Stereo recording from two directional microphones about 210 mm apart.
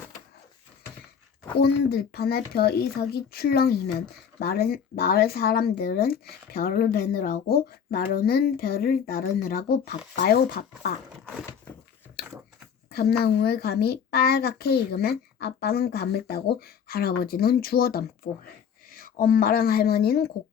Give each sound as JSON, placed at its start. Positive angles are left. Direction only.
{"t": 1.6, "sound": "speech", "side_deg": 50}
{"t": 12.9, "sound": "speech", "side_deg": 50}